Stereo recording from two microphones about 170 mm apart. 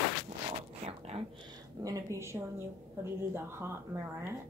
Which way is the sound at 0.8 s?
40° right (ahead or behind).